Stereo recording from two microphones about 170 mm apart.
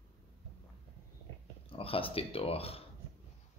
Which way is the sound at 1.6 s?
35° left (ahead or behind).